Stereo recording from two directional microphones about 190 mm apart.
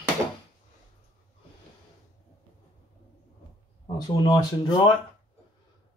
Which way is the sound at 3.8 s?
20° left (ahead or behind).